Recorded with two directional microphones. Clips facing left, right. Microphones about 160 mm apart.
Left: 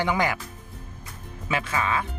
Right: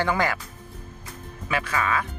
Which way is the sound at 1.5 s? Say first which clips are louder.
Even; 25° left (ahead or behind).